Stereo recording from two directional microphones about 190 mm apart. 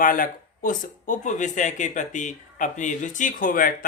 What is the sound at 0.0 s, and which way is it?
Speech, 45° left (ahead or behind).